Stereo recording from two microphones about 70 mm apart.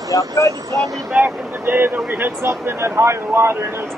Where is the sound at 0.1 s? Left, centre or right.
Left.